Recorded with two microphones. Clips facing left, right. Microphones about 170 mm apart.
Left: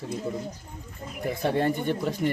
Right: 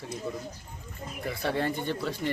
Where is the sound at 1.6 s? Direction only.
15° left (ahead or behind).